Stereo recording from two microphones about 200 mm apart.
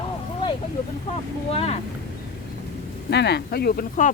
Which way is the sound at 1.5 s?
30° left (ahead or behind).